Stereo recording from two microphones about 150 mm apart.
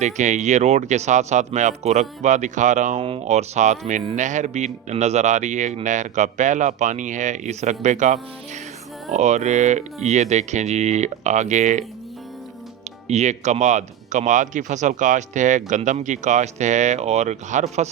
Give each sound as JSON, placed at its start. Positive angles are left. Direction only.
{"t": 0.0, "sound": "speech", "side_deg": -55}
{"t": 3.0, "sound": "speech", "side_deg": -45}
{"t": 13.1, "sound": "speech", "side_deg": -50}